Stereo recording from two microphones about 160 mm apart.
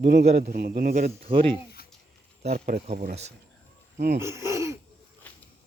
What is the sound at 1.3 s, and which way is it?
Speech, 35° right (ahead or behind).